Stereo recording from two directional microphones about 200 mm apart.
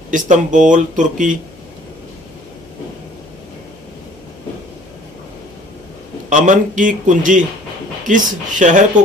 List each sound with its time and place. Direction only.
0.1 s speech: 40° right (ahead or behind)
6.3 s speech: 40° right (ahead or behind)